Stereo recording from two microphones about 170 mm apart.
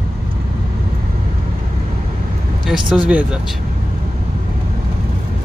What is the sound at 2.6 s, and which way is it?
Speech, centre (ahead or behind).